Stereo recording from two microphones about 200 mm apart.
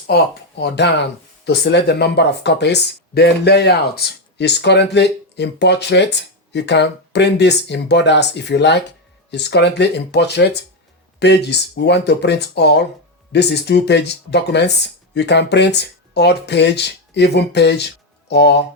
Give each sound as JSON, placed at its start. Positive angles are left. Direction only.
{"t": 0.1, "sound": "speech", "side_deg": 55}